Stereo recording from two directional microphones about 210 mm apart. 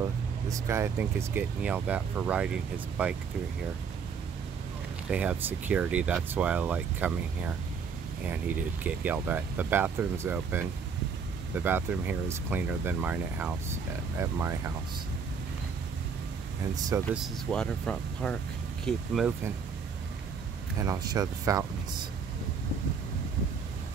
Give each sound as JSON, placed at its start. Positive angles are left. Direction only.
{"t": 0.5, "sound": "speech", "side_deg": -15}
{"t": 5.1, "sound": "speech", "side_deg": -5}
{"t": 16.7, "sound": "speech", "side_deg": -15}
{"t": 17.1, "sound": "speech", "side_deg": 0}
{"t": 20.8, "sound": "speech", "side_deg": -15}